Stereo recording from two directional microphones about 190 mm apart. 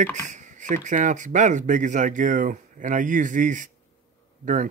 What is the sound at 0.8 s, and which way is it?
Speech, 40° right (ahead or behind).